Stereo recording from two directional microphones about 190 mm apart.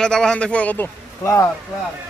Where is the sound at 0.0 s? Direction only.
5° left (ahead or behind).